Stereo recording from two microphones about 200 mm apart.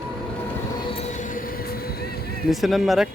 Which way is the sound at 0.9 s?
40° left (ahead or behind).